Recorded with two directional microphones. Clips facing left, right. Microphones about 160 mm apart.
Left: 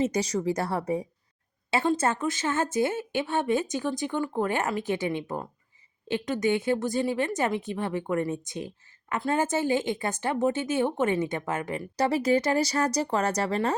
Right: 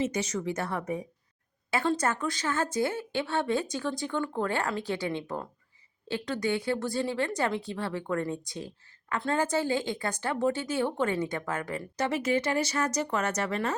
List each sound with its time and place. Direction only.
0.0 s speech: 35° left (ahead or behind)
1.7 s speech: 20° left (ahead or behind)
11.9 s speech: 35° left (ahead or behind)